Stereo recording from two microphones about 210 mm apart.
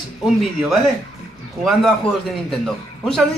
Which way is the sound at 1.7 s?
Centre (ahead or behind).